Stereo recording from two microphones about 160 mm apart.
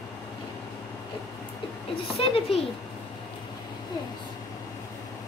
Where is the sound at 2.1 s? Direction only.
40° left (ahead or behind).